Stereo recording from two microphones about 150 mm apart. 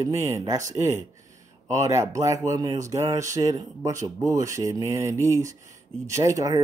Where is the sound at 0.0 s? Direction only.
20° right (ahead or behind).